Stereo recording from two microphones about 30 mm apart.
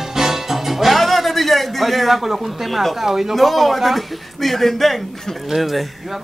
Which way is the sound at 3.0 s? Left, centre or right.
Centre.